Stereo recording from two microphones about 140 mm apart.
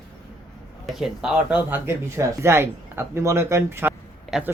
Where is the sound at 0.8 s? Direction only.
Centre (ahead or behind).